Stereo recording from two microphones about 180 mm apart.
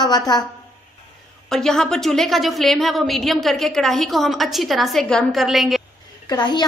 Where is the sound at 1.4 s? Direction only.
5° left (ahead or behind).